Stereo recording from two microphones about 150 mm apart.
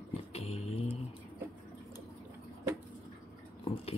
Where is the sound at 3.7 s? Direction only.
40° left (ahead or behind).